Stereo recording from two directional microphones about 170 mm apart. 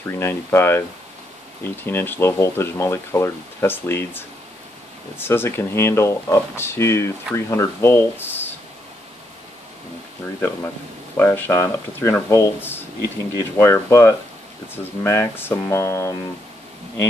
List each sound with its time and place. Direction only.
0.0 s speech: 15° left (ahead or behind)
11.1 s speech: 15° left (ahead or behind)